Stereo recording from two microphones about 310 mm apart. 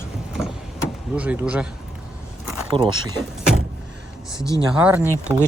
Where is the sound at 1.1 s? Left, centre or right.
Centre.